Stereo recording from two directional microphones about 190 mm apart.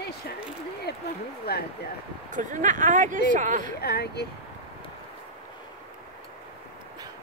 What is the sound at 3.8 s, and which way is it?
Speech, 55° left (ahead or behind).